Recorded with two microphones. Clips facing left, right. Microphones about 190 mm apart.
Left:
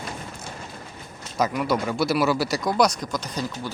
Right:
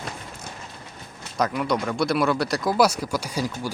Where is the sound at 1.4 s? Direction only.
5° left (ahead or behind).